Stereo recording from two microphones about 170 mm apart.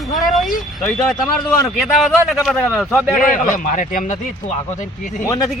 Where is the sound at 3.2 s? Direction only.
50° left (ahead or behind).